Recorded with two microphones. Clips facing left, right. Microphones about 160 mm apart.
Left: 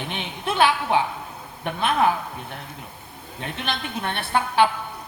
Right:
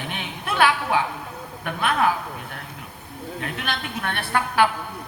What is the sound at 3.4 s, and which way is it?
A man's voice, 30° left (ahead or behind).